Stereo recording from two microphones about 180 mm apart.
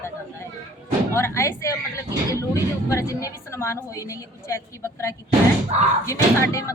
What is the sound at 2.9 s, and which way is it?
A woman's voice, 15° left (ahead or behind).